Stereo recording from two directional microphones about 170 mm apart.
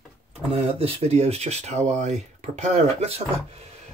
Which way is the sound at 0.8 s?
35° right (ahead or behind).